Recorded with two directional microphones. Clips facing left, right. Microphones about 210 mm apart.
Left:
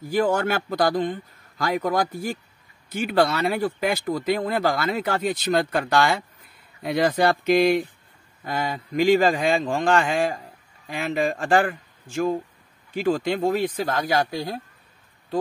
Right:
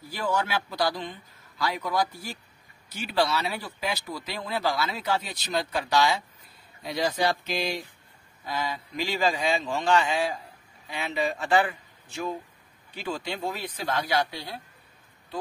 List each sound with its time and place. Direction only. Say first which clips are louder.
0.0 s speech: left 7 dB; 50° left (ahead or behind)